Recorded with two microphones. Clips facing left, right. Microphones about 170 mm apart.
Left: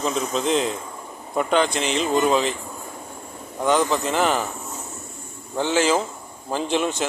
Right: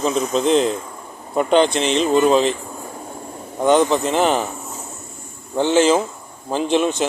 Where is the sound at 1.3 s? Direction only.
25° right (ahead or behind).